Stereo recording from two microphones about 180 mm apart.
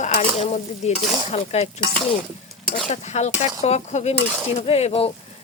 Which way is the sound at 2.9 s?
40° left (ahead or behind).